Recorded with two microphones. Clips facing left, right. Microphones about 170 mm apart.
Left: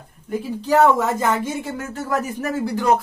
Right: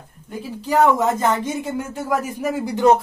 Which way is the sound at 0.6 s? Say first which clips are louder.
Left 1 dB; 15° right (ahead or behind).